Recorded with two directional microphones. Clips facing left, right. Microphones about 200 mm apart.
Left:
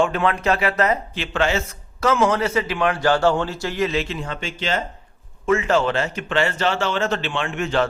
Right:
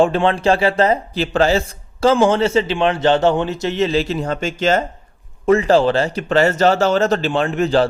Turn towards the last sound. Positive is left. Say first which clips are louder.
# right 6 dB
turn(degrees=-35)  # may be behind; listen again after turning